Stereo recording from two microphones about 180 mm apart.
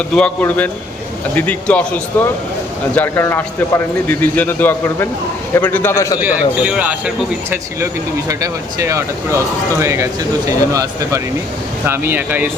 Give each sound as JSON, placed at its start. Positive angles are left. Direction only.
{"t": 0.1, "sound": "a man's voice", "side_deg": 5}
{"t": 6.1, "sound": "speech", "side_deg": -10}
{"t": 8.3, "sound": "speech", "side_deg": -20}